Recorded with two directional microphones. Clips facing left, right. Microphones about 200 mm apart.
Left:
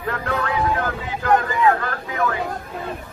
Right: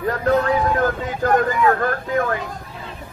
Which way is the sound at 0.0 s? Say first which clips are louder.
Right 7 dB; 35° right (ahead or behind).